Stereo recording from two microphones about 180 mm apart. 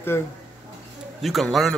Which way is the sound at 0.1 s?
15° left (ahead or behind).